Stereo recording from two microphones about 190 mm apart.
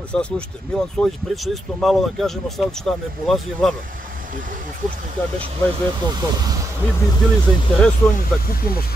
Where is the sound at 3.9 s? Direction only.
45° right (ahead or behind).